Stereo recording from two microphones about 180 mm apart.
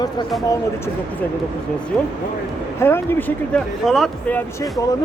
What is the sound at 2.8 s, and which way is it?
Speech, 15° left (ahead or behind).